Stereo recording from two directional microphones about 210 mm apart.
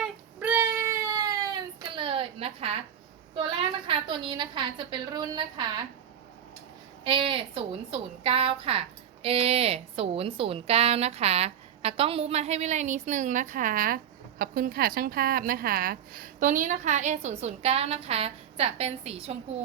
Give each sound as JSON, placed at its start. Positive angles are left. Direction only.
{"t": 0.0, "sound": "baby cry", "side_deg": -5}
{"t": 3.3, "sound": "a woman's voice", "side_deg": -25}
{"t": 7.0, "sound": "a woman's voice", "side_deg": -25}